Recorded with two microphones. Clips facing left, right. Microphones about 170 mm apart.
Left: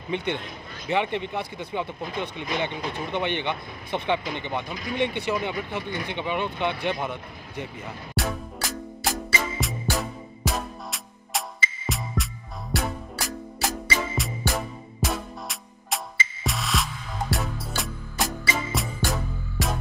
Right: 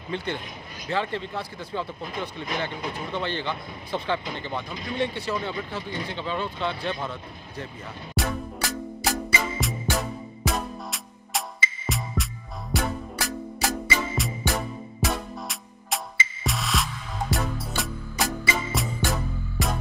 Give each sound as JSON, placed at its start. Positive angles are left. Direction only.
{"t": 0.1, "sound": "speech", "side_deg": 20}
{"t": 8.2, "sound": "music", "side_deg": 0}